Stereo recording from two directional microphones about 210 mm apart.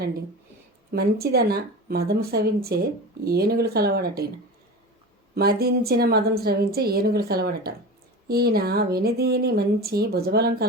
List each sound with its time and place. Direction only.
0.9 s a woman's voice: 50° right (ahead or behind)
5.3 s a woman's voice: 45° right (ahead or behind)